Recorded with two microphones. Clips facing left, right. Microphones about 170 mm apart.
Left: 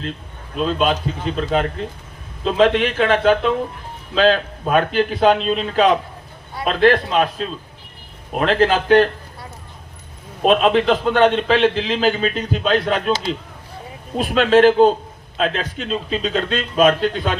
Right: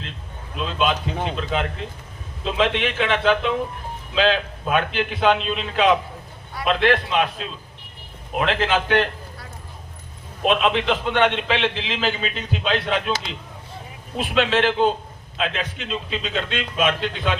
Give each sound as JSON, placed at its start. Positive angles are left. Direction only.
{"t": 0.5, "sound": "a man's voice", "side_deg": 40}
{"t": 10.4, "sound": "a man's voice", "side_deg": 40}